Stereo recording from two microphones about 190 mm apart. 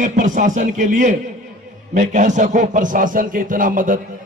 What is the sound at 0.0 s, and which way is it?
A man's voice, 40° right (ahead or behind).